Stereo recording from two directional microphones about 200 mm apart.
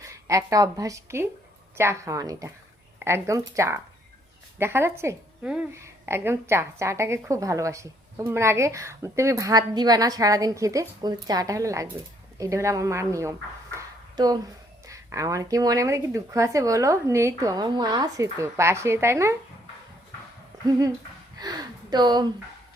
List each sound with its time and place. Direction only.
0.0 s a woman's voice: 15° right (ahead or behind)
21.3 s speech: 20° right (ahead or behind)